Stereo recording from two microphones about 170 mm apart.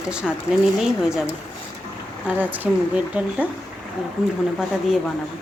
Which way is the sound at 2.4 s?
10° right (ahead or behind).